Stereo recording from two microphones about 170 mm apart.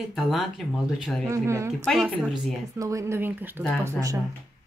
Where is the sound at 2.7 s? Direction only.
20° right (ahead or behind).